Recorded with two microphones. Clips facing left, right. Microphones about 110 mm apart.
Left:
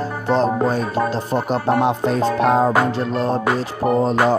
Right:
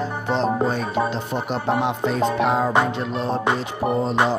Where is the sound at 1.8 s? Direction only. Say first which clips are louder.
Left 3 dB; 40° left (ahead or behind).